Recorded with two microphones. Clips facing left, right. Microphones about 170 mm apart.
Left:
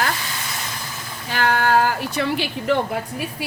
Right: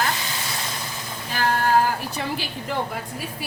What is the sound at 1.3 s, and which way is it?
A woman's voice, 90° left.